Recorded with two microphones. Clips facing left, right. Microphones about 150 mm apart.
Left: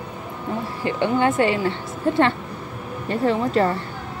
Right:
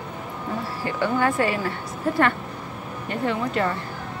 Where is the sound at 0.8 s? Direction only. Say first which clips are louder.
Left 3 dB; 20° left (ahead or behind).